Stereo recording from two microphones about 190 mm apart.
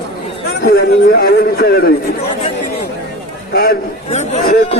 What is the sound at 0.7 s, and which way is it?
A man's voice, 55° left (ahead or behind).